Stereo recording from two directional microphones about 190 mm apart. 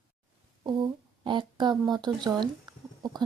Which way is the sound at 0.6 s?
25° right (ahead or behind).